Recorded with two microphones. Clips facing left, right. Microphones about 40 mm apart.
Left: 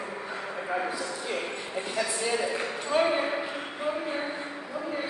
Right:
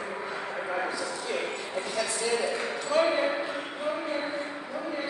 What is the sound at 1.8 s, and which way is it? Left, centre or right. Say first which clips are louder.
Speech: left 1 dB; centre.